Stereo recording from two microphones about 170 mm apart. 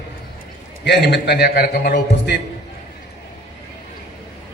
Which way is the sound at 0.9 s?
80° left.